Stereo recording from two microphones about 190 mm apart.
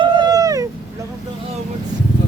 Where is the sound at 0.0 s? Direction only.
20° right (ahead or behind).